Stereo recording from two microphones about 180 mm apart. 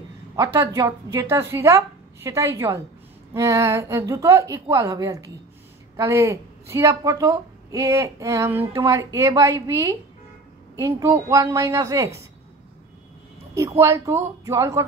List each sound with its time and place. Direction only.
0.4 s a woman's voice: 15° right (ahead or behind)
13.6 s a woman's voice: 15° right (ahead or behind)